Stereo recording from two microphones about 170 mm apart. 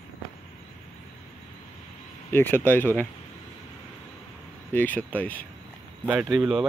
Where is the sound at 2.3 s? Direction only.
10° left (ahead or behind).